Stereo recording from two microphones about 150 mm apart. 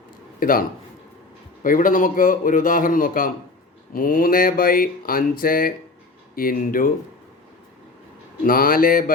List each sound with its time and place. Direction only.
0.3 s a man's voice: 70° left (ahead or behind)
1.6 s a man's voice: 65° left (ahead or behind)
8.4 s speech: 70° left (ahead or behind)